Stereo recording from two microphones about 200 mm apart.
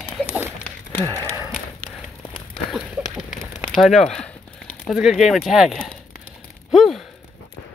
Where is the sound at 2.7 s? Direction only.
Centre (ahead or behind).